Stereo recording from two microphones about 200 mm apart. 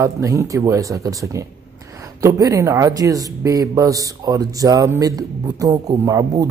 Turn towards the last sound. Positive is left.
turn(degrees=-15)  # may be behind; listen again after turning